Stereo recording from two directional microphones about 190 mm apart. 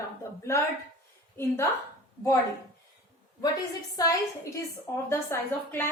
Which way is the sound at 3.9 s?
20° left (ahead or behind).